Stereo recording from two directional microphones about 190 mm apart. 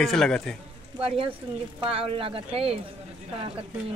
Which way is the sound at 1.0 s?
30° right (ahead or behind).